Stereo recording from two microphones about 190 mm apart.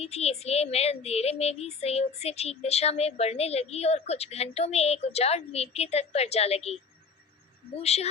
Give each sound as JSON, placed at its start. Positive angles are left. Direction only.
{"t": 0.0, "sound": "speech", "side_deg": 35}
{"t": 7.8, "sound": "speech", "side_deg": 35}